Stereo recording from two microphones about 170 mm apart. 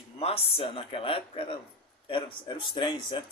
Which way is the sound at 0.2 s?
35° left (ahead or behind).